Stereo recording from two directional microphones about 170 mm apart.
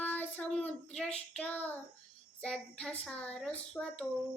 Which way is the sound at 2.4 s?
5° left (ahead or behind).